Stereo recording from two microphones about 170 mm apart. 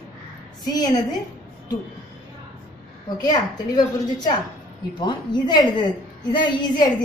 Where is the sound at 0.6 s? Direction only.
25° left (ahead or behind).